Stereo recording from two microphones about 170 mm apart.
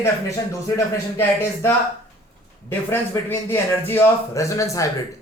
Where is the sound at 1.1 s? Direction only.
15° left (ahead or behind).